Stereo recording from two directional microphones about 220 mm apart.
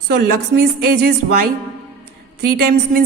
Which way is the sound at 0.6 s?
45° right (ahead or behind).